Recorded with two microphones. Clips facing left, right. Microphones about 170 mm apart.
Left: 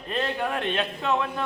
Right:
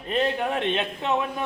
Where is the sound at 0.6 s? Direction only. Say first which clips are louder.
Right 2 dB; 20° right (ahead or behind).